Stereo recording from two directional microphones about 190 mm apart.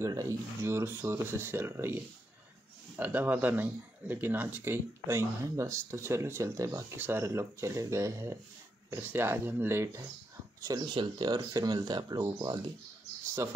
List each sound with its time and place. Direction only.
0.0 s speech: 15° right (ahead or behind)
3.0 s speech: 10° right (ahead or behind)